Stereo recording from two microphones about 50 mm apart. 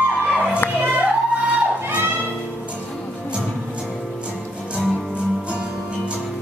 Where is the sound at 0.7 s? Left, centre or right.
Right.